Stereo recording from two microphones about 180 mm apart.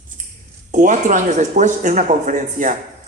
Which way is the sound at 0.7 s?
45° right (ahead or behind).